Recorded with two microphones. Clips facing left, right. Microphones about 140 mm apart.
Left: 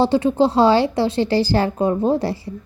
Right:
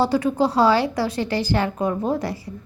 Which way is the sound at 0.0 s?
25° left (ahead or behind).